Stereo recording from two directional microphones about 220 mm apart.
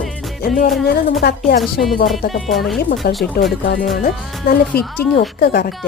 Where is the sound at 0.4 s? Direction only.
40° left (ahead or behind).